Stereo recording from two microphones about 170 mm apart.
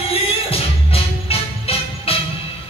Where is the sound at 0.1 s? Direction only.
35° left (ahead or behind).